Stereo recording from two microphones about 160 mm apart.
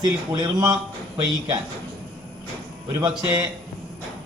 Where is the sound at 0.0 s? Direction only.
25° right (ahead or behind).